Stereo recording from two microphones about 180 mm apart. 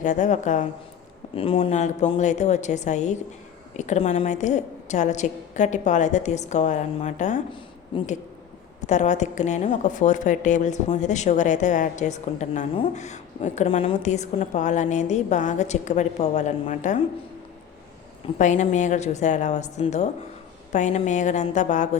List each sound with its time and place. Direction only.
0.0 s a woman's voice: 45° left (ahead or behind)
1.4 s a woman's voice: 30° left (ahead or behind)
8.8 s a woman's voice: 40° left (ahead or behind)
18.3 s a woman's voice: 45° left (ahead or behind)